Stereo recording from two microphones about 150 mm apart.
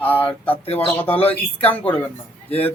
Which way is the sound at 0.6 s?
40° left (ahead or behind).